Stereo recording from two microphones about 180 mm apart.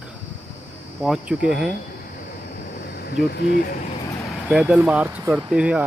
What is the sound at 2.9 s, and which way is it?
Speech, 65° left (ahead or behind).